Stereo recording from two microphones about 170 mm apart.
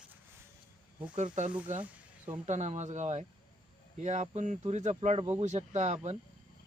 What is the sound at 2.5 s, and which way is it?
Speech, 40° right (ahead or behind).